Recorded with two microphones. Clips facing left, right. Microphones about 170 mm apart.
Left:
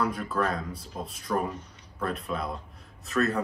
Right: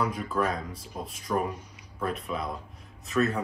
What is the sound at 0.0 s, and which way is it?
Speech, centre (ahead or behind).